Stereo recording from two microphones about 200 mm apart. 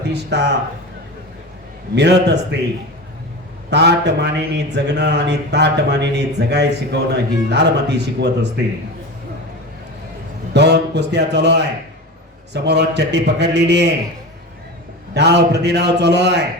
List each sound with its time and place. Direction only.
0.0 s a man's voice: 60° right (ahead or behind)
2.0 s a man's voice: 55° right (ahead or behind)
3.7 s a man's voice: 60° right (ahead or behind)
10.5 s a man's voice: 60° right (ahead or behind)
15.1 s a man's voice: 55° right (ahead or behind)